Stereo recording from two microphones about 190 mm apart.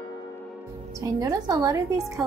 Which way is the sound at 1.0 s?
15° right (ahead or behind).